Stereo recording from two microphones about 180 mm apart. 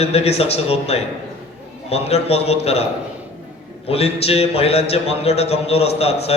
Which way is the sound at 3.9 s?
35° left (ahead or behind).